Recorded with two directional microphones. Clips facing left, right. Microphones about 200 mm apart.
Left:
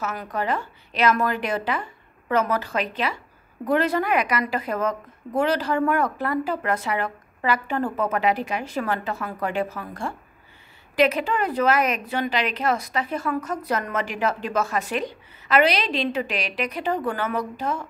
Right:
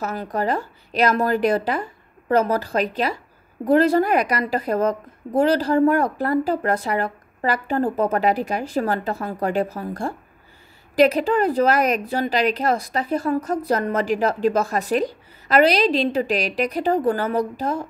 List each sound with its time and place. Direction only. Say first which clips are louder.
0.0 s a woman's voice: right 4 dB; 35° right (ahead or behind)